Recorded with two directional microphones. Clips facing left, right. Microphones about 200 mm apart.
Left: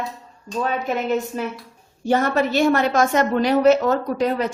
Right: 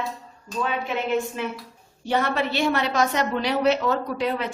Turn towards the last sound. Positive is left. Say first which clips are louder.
# left 5 dB
turn(degrees=40)  # may be behind; listen again after turning